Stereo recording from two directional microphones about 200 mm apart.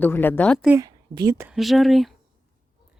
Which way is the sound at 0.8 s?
20° right (ahead or behind).